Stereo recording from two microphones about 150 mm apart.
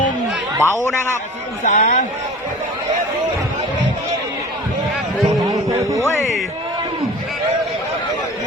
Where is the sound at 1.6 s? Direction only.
55° left (ahead or behind).